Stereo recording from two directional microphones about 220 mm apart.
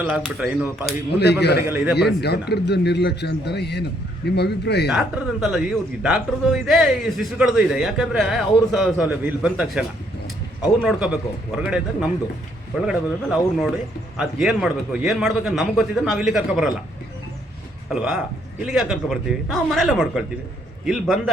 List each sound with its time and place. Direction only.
0.0 s a man's voice: 5° right (ahead or behind)
0.9 s speech: 50° left (ahead or behind)
1.6 s a man's voice: 5° right (ahead or behind)
2.0 s speech: 50° left (ahead or behind)
4.9 s a man's voice: centre (ahead or behind)
17.8 s a man's voice: centre (ahead or behind)